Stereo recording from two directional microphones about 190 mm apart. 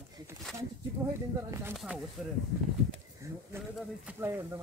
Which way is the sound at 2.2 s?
Centre (ahead or behind).